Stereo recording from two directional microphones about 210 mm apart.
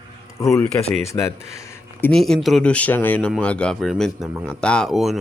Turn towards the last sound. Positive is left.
turn(degrees=0)  # may be behind; listen again after turning